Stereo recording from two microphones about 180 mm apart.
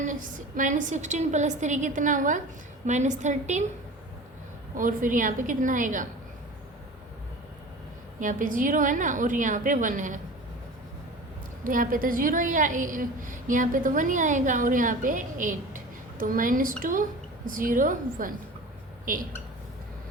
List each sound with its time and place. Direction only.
0.0 s a woman's voice: 45° right (ahead or behind)
4.7 s a woman's voice: 50° right (ahead or behind)
8.2 s a woman's voice: 45° right (ahead or behind)
11.6 s a woman's voice: 50° right (ahead or behind)